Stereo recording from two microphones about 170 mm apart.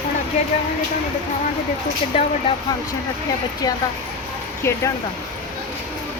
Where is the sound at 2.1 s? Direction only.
35° left (ahead or behind).